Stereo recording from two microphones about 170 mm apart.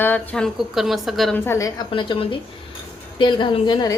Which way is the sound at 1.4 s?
15° left (ahead or behind).